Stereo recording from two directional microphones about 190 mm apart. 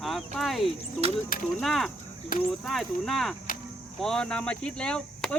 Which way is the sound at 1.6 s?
Centre (ahead or behind).